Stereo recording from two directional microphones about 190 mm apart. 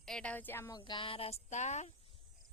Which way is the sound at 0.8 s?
25° left (ahead or behind).